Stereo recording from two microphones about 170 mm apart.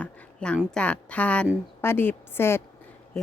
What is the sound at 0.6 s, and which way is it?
A woman's voice, 5° left (ahead or behind).